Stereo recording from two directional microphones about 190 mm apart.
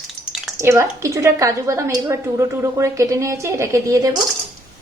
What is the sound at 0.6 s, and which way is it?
A woman's voice, 15° right (ahead or behind).